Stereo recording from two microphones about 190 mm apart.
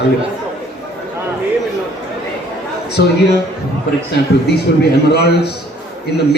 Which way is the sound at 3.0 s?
65° left (ahead or behind).